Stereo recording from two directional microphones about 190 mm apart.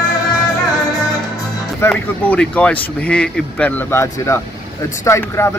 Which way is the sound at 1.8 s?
5° left (ahead or behind).